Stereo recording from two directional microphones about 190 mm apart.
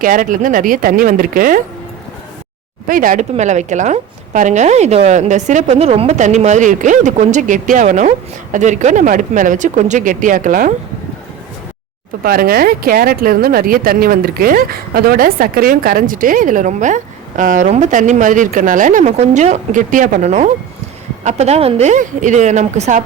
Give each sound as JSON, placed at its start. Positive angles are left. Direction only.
{"t": 0.0, "sound": "speech", "side_deg": -45}
{"t": 2.8, "sound": "a woman's voice", "side_deg": -45}
{"t": 12.2, "sound": "a woman's voice", "side_deg": -50}